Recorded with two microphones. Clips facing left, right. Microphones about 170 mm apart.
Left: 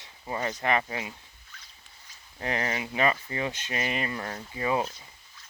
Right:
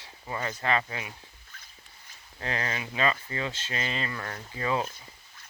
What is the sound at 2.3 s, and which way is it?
Speech, 20° left (ahead or behind).